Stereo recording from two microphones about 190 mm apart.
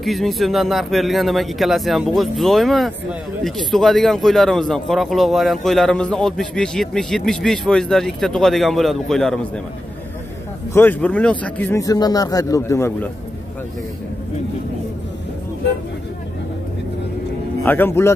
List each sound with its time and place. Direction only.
0.0 s a man's voice: centre (ahead or behind)
10.7 s speech: 10° left (ahead or behind)
17.6 s speech: 10° left (ahead or behind)